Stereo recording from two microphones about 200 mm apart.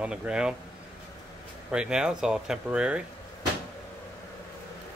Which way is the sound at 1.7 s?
5° right (ahead or behind).